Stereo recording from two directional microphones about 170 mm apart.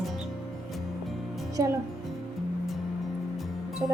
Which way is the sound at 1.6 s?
20° right (ahead or behind).